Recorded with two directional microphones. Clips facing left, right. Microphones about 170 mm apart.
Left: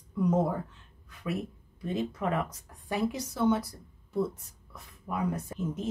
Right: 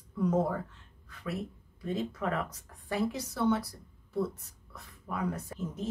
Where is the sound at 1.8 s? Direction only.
20° left (ahead or behind).